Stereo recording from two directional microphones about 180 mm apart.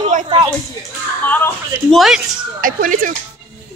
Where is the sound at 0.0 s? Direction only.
45° right (ahead or behind).